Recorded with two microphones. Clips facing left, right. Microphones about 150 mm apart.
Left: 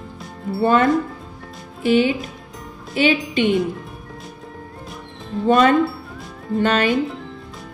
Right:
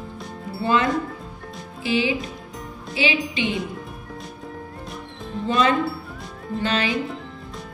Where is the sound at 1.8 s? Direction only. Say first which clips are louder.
Left 6 dB; 55° left (ahead or behind).